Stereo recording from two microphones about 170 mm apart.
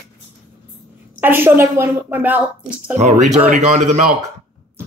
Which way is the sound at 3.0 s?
40° right (ahead or behind).